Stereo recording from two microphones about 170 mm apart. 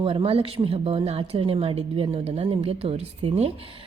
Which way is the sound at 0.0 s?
30° right (ahead or behind).